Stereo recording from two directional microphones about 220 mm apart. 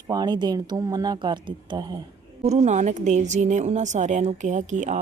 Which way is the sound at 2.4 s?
30° right (ahead or behind).